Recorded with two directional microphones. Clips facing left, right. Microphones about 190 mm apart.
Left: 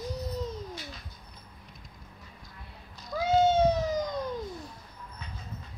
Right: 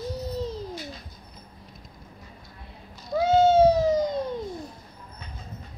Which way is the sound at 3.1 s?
30° right (ahead or behind).